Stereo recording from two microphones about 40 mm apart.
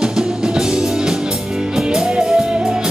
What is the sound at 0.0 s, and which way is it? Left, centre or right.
Music, centre.